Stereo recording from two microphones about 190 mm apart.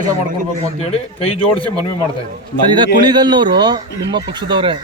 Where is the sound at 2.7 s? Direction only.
25° right (ahead or behind).